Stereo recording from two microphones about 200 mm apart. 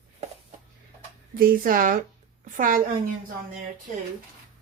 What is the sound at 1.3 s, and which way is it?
Speech, 45° right (ahead or behind).